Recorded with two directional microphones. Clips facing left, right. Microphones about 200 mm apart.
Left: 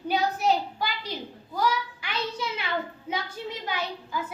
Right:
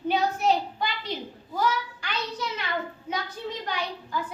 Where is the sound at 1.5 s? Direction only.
5° left (ahead or behind).